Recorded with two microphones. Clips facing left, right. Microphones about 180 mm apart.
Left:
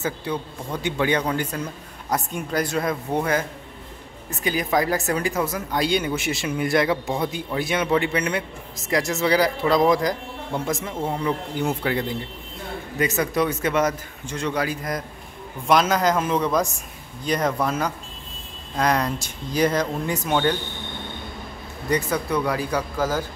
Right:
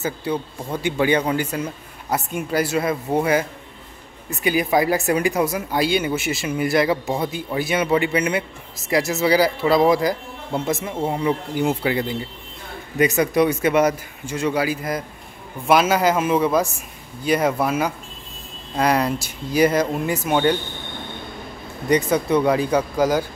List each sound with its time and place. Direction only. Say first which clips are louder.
0.0 s speech: right 3 dB; 5° right (ahead or behind)
21.8 s speech: right 5 dB; 20° right (ahead or behind)